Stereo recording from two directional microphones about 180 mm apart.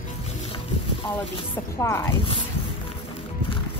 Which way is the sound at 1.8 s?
15° left (ahead or behind).